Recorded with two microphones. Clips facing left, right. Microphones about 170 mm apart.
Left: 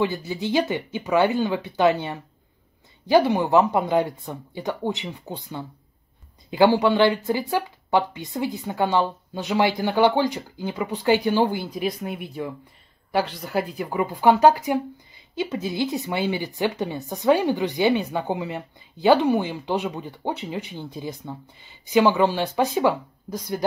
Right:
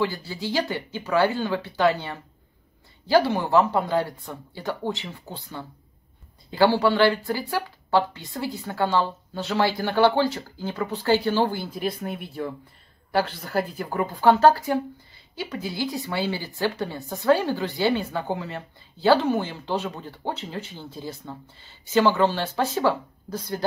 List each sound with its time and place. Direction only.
0.0 s a woman's voice: 20° left (ahead or behind)
11.7 s speech: centre (ahead or behind)
14.2 s a woman's voice: 15° left (ahead or behind)